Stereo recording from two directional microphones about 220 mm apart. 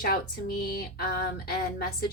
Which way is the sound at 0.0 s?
45° left (ahead or behind).